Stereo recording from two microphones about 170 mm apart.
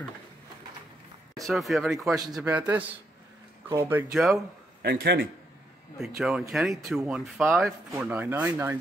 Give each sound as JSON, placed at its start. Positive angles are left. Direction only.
{"t": 1.4, "sound": "speech", "side_deg": 0}
{"t": 2.4, "sound": "speech", "side_deg": -10}
{"t": 4.1, "sound": "speech", "side_deg": 0}
{"t": 4.8, "sound": "a man's voice", "side_deg": -75}
{"t": 5.9, "sound": "speech", "side_deg": 0}
{"t": 8.0, "sound": "speech", "side_deg": -10}